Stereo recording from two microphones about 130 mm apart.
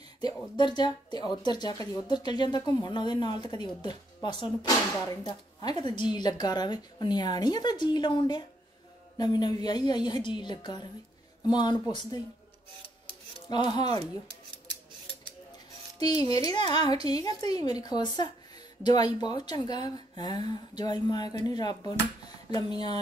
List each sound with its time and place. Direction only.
0.6 s speech: 35° left (ahead or behind)
13.5 s speech: 35° left (ahead or behind)
16.3 s speech: 30° left (ahead or behind)